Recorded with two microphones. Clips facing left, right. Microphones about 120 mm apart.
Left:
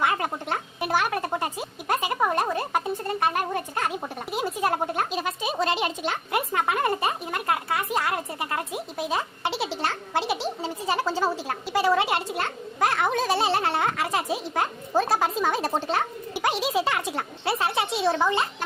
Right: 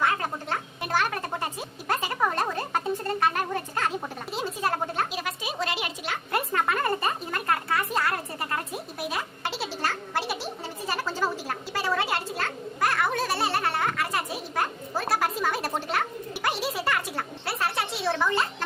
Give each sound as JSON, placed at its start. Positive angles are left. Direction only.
{"t": 0.0, "sound": "speech", "side_deg": 15}
{"t": 5.1, "sound": "speech", "side_deg": 25}
{"t": 6.3, "sound": "speech", "side_deg": 15}
{"t": 16.3, "sound": "speech", "side_deg": 15}